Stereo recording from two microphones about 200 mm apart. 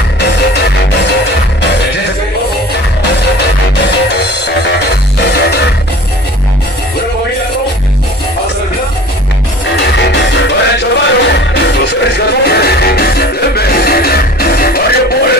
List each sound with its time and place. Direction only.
0.2 s music: 55° left (ahead or behind)
9.8 s music: 60° left (ahead or behind)